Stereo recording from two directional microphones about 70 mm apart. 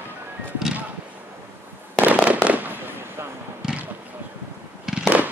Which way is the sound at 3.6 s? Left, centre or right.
Centre.